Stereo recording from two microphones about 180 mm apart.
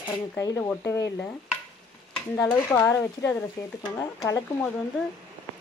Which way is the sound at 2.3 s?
10° left (ahead or behind).